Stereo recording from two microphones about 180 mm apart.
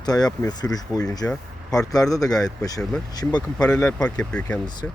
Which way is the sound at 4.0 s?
5° left (ahead or behind).